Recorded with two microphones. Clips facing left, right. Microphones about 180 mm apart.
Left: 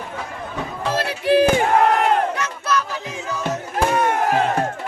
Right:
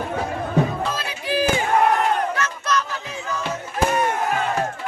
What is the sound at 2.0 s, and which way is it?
Battle cry, 75° left (ahead or behind).